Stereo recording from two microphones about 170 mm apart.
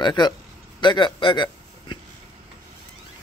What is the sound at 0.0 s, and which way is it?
A man's voice, 25° left (ahead or behind).